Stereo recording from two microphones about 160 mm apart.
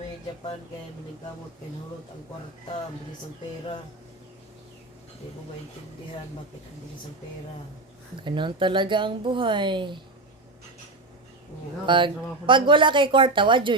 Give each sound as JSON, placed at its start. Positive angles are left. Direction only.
{"t": 8.2, "sound": "speech", "side_deg": -30}
{"t": 11.9, "sound": "speech", "side_deg": -30}